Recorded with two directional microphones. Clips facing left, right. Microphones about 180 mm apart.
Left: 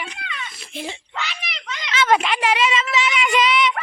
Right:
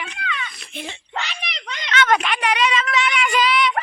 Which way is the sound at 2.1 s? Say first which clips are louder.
Left 4 dB; 25° left (ahead or behind).